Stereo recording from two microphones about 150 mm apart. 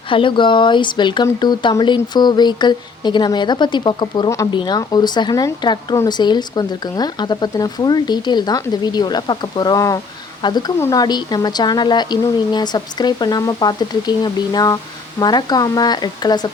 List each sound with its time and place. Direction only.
0.1 s speech: 35° left (ahead or behind)